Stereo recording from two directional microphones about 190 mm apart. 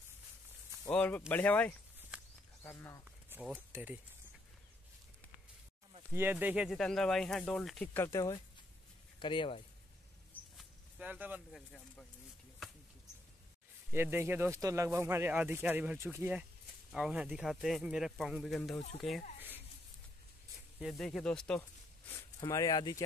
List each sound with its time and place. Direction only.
0.8 s speech: 10° left (ahead or behind)
2.0 s a sound: 5° right (ahead or behind)
2.6 s speech: 10° left (ahead or behind)
3.3 s speech: 10° right (ahead or behind)
6.1 s speech: 10° right (ahead or behind); by 9.6 s 25° left (ahead or behind)
10.6 s a sound: 10° right (ahead or behind)
13.9 s speech: 10° right (ahead or behind)
20.8 s speech: centre (ahead or behind); by 23.0 s 20° left (ahead or behind)